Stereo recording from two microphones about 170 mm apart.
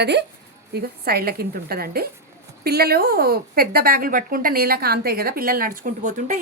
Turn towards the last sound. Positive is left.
turn(degrees=-45)  # may be behind; listen again after turning